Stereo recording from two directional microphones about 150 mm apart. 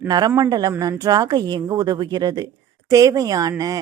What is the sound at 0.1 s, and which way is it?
Speech, 25° right (ahead or behind).